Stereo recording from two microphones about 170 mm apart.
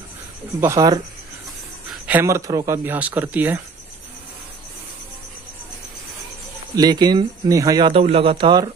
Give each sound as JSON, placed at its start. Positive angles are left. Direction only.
{"t": 0.6, "sound": "speech", "side_deg": -20}
{"t": 2.0, "sound": "speech", "side_deg": -15}
{"t": 6.7, "sound": "speech", "side_deg": -25}
{"t": 7.9, "sound": "a man's voice", "side_deg": -35}